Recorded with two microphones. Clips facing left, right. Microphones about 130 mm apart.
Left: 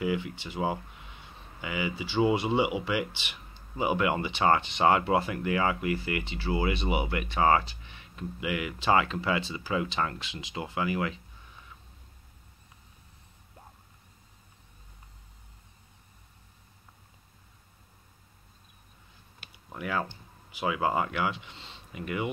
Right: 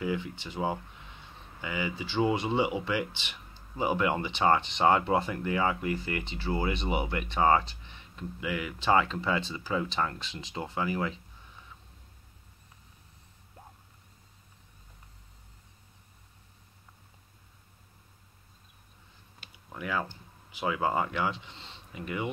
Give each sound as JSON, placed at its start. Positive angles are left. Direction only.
{"t": 0.0, "sound": "speech", "side_deg": 10}
{"t": 19.7, "sound": "speech", "side_deg": 15}
{"t": 21.5, "sound": "a sound", "side_deg": -25}